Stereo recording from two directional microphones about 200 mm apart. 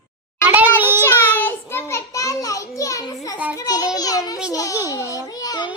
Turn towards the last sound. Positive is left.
turn(degrees=20)  # may be behind; listen again after turning